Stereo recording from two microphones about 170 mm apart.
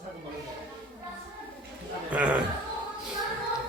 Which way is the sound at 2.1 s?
10° right (ahead or behind).